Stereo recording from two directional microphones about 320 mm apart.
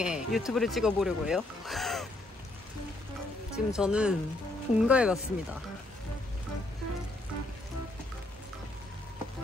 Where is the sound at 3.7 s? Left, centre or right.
Centre.